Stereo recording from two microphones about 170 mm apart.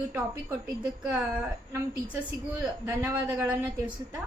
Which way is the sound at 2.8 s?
10° right (ahead or behind).